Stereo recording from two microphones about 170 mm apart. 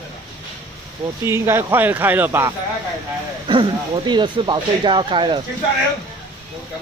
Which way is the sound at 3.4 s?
30° right (ahead or behind).